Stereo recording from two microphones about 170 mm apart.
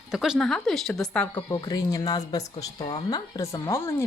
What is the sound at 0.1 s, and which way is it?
Speech, centre (ahead or behind).